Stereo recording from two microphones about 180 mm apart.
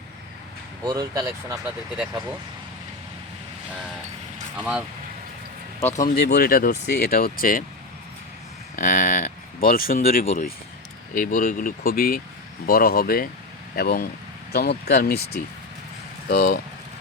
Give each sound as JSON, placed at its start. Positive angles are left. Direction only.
{"t": 0.9, "sound": "speech", "side_deg": -20}
{"t": 4.5, "sound": "speech", "side_deg": -5}
{"t": 5.8, "sound": "speech", "side_deg": 50}
{"t": 8.7, "sound": "speech", "side_deg": 45}
{"t": 16.3, "sound": "speech", "side_deg": 50}